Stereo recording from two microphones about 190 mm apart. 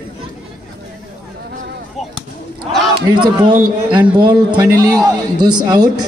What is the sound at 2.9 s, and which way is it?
A man's voice, 25° right (ahead or behind).